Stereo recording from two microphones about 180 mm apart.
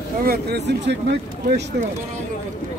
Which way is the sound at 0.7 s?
75° right (ahead or behind).